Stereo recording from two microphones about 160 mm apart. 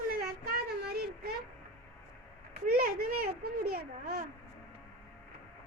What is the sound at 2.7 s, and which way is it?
A child's voice, 70° right (ahead or behind).